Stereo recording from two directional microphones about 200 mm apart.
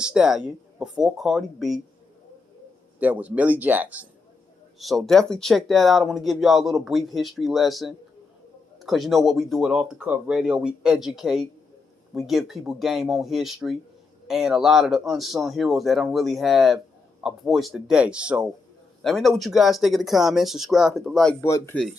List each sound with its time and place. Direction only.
0.0 s speech: 5° right (ahead or behind)
3.0 s speech: 5° right (ahead or behind)
21.5 s speech: 15° left (ahead or behind)